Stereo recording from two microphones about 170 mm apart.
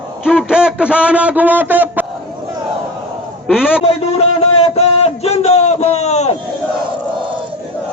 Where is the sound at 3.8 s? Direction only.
35° left (ahead or behind).